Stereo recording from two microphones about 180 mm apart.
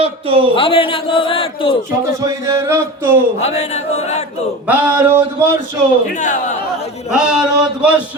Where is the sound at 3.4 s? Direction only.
35° left (ahead or behind).